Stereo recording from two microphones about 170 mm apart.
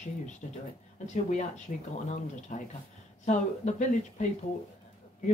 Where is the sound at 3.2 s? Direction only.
45° left (ahead or behind).